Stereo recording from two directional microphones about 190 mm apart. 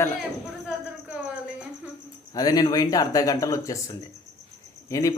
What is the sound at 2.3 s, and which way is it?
Speech, 20° left (ahead or behind).